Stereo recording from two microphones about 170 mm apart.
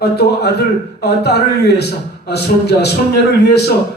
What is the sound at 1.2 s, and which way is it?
A man's voice, 70° left (ahead or behind).